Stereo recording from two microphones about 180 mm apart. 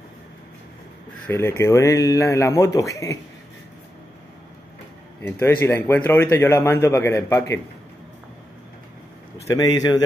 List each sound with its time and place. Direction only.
1.2 s speech: 15° left (ahead or behind)
5.2 s speech: 10° left (ahead or behind)
9.5 s a man's voice: 20° left (ahead or behind)